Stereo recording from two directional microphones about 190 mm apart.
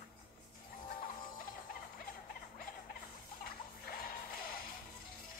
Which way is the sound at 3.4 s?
50° left (ahead or behind).